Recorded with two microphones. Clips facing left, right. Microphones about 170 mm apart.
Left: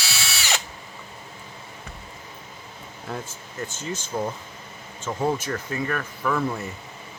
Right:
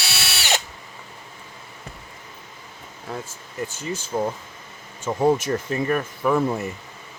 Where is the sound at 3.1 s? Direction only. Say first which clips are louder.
Right 1 dB; centre (ahead or behind).